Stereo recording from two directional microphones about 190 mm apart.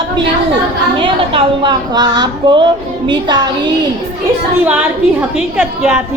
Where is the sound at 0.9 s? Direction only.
25° right (ahead or behind).